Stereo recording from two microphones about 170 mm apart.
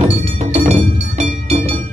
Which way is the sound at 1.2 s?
35° right (ahead or behind).